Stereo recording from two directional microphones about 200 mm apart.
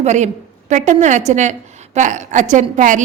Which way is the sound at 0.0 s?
35° right (ahead or behind).